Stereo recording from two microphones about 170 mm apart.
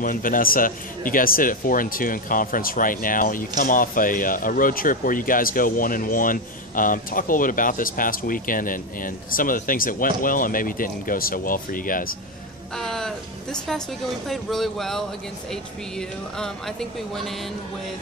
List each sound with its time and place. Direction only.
0.0 s a man's voice: 55° left (ahead or behind)
12.7 s speech: 5° left (ahead or behind)